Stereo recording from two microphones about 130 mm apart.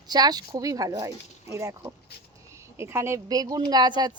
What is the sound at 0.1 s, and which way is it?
A woman's voice, 30° right (ahead or behind).